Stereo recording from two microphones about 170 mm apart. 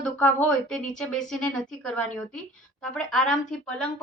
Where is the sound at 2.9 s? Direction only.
5° left (ahead or behind).